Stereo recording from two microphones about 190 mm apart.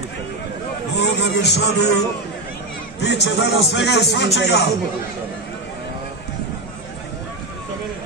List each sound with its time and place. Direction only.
0.9 s music: 60° left (ahead or behind)
3.0 s speech: 65° left (ahead or behind)